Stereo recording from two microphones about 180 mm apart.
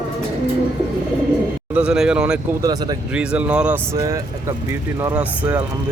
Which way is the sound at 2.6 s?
20° right (ahead or behind).